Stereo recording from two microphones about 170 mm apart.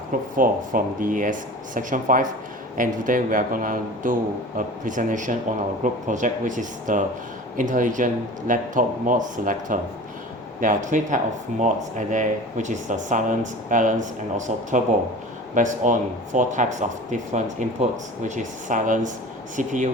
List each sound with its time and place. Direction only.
0.1 s speech: 50° right (ahead or behind)